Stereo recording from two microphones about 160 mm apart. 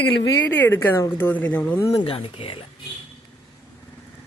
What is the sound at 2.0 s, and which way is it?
Speech, 35° left (ahead or behind).